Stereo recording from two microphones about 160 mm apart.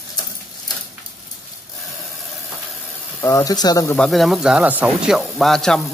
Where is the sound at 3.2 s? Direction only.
20° left (ahead or behind).